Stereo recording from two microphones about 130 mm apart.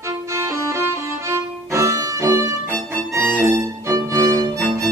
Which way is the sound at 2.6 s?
10° left (ahead or behind).